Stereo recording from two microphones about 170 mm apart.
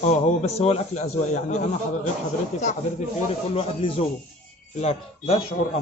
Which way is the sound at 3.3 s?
35° left (ahead or behind).